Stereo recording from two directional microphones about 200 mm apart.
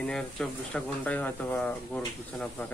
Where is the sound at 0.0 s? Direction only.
5° left (ahead or behind).